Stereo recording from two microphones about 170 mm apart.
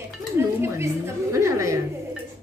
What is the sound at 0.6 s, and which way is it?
A woman's voice, 15° right (ahead or behind).